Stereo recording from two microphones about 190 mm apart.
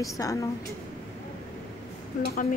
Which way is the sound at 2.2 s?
55° left (ahead or behind).